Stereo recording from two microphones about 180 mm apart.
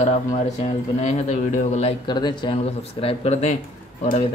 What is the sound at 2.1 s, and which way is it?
Speech, 25° left (ahead or behind).